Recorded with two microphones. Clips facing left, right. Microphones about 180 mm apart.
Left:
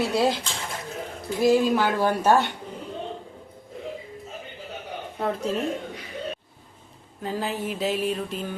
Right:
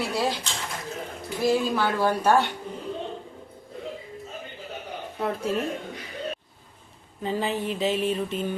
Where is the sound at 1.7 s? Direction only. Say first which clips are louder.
Left 2 dB; 15° left (ahead or behind).